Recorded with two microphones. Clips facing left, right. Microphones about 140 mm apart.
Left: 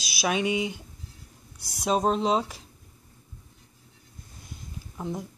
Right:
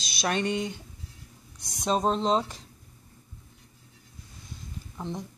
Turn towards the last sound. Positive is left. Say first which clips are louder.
# left 2 dB
turn(degrees=5)  # may be behind; listen again after turning